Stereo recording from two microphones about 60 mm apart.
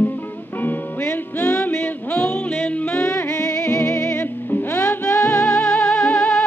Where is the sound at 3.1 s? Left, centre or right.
Left.